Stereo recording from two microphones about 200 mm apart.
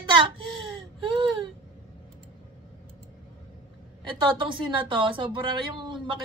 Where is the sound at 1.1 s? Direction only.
25° right (ahead or behind).